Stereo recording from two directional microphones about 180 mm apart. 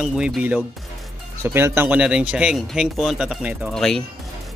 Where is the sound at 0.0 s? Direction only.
5° right (ahead or behind).